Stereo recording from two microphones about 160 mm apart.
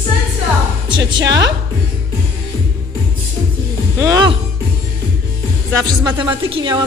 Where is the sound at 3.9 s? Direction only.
20° right (ahead or behind).